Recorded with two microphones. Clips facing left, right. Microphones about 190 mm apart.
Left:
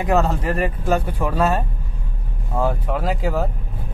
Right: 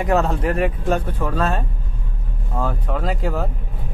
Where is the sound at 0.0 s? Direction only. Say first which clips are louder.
Even; centre (ahead or behind).